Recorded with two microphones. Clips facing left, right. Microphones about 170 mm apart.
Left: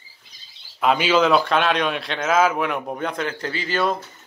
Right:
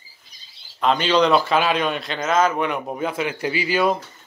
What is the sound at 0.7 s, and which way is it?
A man's voice, 5° left (ahead or behind).